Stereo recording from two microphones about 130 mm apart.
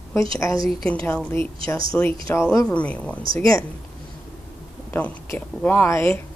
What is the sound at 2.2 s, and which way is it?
Speech, 20° left (ahead or behind).